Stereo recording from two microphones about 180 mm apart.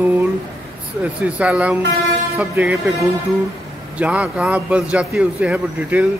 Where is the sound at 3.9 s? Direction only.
5° right (ahead or behind).